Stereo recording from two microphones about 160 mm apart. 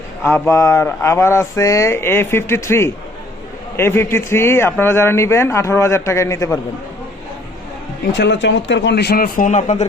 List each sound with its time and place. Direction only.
0.3 s a man's voice: 15° left (ahead or behind)
8.1 s speech: 90° left; by 9.8 s 50° left (ahead or behind)